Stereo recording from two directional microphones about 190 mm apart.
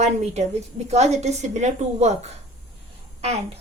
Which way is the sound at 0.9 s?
35° right (ahead or behind).